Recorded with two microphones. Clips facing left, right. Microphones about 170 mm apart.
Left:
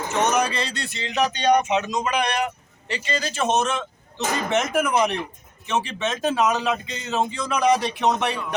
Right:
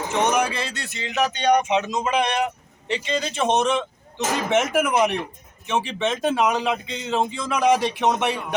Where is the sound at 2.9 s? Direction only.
Centre (ahead or behind).